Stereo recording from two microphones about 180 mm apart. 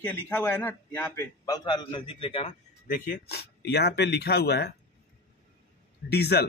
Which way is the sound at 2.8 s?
50° left (ahead or behind).